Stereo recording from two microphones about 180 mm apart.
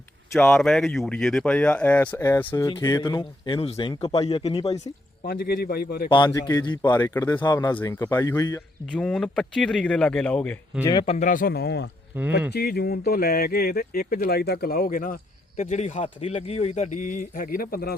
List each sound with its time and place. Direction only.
0.3 s speech: 5° left (ahead or behind); by 4.6 s 25° left (ahead or behind)
5.2 s speech: 55° left (ahead or behind)
6.1 s speech: 25° left (ahead or behind)
8.9 s a man's voice: 5° left (ahead or behind)
11.0 s speech: 40° left (ahead or behind); by 11.9 s 65° left (ahead or behind)
12.1 s speech: 10° right (ahead or behind)
12.5 s speech: 60° left (ahead or behind)
15.5 s a man's voice: 40° left (ahead or behind); by 17.9 s 55° left (ahead or behind)